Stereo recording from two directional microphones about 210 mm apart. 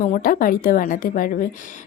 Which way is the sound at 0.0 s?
40° left (ahead or behind).